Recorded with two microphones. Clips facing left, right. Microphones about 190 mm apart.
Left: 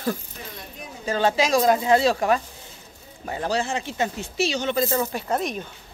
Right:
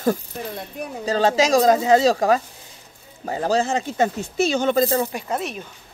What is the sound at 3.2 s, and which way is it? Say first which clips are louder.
Speech: right 5 dB; 35° right (ahead or behind).